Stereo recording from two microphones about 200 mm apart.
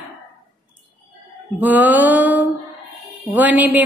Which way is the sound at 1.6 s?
10° right (ahead or behind).